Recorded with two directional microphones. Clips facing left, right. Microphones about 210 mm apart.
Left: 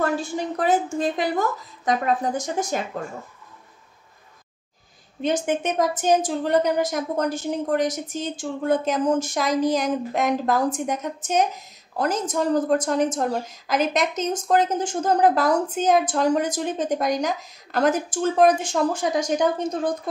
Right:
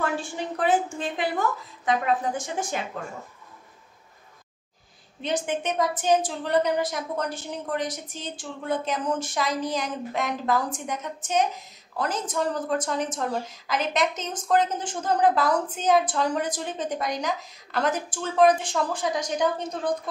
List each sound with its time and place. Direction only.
0.0 s a woman's voice: 40° left (ahead or behind)
5.2 s a woman's voice: 45° left (ahead or behind)